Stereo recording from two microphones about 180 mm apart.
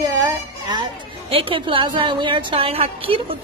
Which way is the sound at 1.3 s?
30° right (ahead or behind).